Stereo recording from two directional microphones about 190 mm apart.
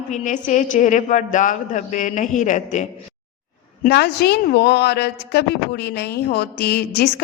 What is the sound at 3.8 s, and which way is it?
Speech, 60° left (ahead or behind).